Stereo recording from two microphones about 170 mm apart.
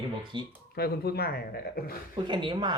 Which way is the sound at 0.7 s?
65° left (ahead or behind).